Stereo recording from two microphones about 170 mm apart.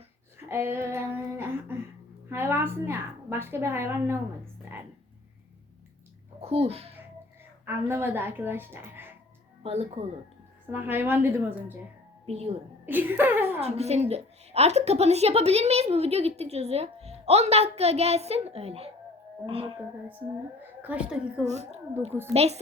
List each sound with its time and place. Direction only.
0.4 s child singing: 15° right (ahead or behind)
2.3 s a woman's voice: 15° right (ahead or behind)
6.4 s a child's voice: 35° right (ahead or behind)
7.6 s speech: 15° right (ahead or behind)
9.6 s a woman's voice: 40° right (ahead or behind)
10.7 s speech: 10° right (ahead or behind)
12.2 s a woman's voice: 35° right (ahead or behind)
12.8 s a sound: 10° right (ahead or behind)
13.6 s a woman's voice: 40° right (ahead or behind)
20.8 s speech: 5° right (ahead or behind)
21.4 s a woman's voice: 40° right (ahead or behind)